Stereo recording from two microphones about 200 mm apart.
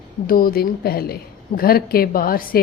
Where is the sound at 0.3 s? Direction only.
45° left (ahead or behind).